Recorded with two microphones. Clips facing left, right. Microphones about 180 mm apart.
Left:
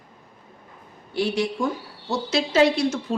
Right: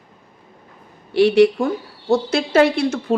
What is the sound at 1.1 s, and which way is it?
A man's voice, 70° right (ahead or behind).